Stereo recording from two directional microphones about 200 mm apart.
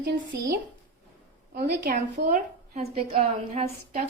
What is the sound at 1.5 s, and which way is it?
A woman's voice, 45° right (ahead or behind).